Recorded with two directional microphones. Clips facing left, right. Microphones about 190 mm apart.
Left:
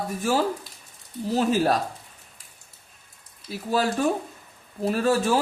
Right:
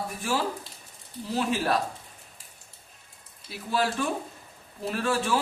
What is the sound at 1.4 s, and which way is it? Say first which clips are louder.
Speech: left 5 dB; 40° left (ahead or behind).